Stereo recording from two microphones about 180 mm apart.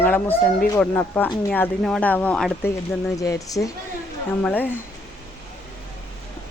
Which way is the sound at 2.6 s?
15° left (ahead or behind).